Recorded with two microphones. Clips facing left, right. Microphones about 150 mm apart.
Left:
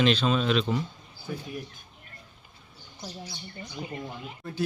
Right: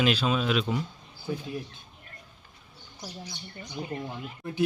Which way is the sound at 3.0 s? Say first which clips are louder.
Left 1 dB; 15° right (ahead or behind).